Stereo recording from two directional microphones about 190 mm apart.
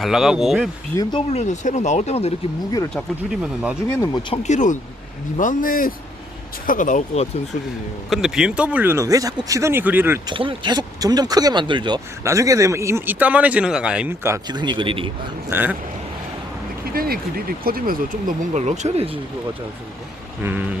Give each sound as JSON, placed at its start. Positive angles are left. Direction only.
{"t": 0.0, "sound": "speech", "side_deg": 0}
{"t": 0.9, "sound": "speech", "side_deg": 15}
{"t": 1.3, "sound": "speech", "side_deg": 35}
{"t": 2.9, "sound": "speech", "side_deg": -5}
{"t": 3.8, "sound": "speech", "side_deg": 10}
{"t": 4.4, "sound": "speech", "side_deg": 40}
{"t": 8.1, "sound": "speech", "side_deg": -5}
{"t": 10.2, "sound": "speech", "side_deg": -25}
{"t": 15.4, "sound": "speech", "side_deg": -10}
{"t": 16.9, "sound": "speech", "side_deg": -50}
{"t": 20.4, "sound": "speech", "side_deg": -10}